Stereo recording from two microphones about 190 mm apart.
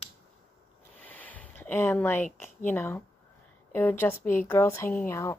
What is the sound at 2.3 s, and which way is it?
A woman's voice, 10° left (ahead or behind).